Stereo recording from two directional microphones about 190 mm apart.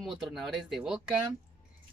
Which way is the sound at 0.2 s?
Centre (ahead or behind).